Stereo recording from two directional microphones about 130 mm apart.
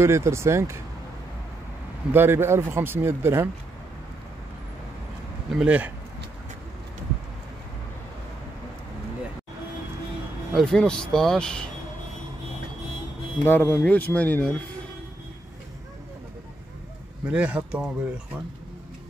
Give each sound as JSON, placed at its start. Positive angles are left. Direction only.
{"t": 0.0, "sound": "speech", "side_deg": -20}
{"t": 2.1, "sound": "speech", "side_deg": -20}
{"t": 5.5, "sound": "speech", "side_deg": -10}
{"t": 10.5, "sound": "speech", "side_deg": 5}
{"t": 13.4, "sound": "speech", "side_deg": 15}
{"t": 17.3, "sound": "speech", "side_deg": -10}